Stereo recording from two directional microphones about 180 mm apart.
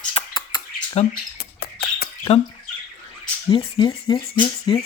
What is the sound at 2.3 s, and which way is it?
Speech, 35° left (ahead or behind).